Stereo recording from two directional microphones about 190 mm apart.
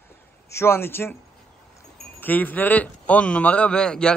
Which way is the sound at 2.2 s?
10° left (ahead or behind).